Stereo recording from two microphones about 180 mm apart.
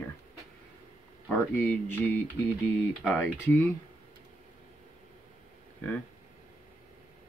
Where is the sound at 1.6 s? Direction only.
10° left (ahead or behind).